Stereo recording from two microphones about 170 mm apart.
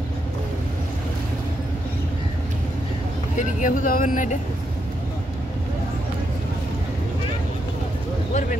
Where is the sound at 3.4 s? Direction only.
50° left (ahead or behind).